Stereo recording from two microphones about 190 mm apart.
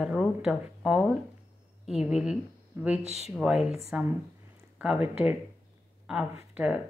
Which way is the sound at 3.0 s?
35° right (ahead or behind).